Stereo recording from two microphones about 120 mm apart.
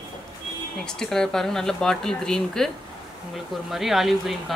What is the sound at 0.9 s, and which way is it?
A woman's voice, 5° left (ahead or behind).